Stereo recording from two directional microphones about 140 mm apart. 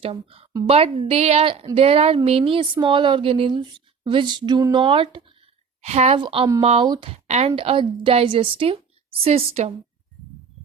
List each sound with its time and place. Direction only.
0.0 s a woman's voice: 45° right (ahead or behind)
5.8 s a woman's voice: 50° right (ahead or behind)
6.1 s speech: 35° right (ahead or behind)
7.1 s a woman's voice: 50° right (ahead or behind)